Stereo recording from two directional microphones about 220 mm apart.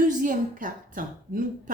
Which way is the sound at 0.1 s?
35° right (ahead or behind).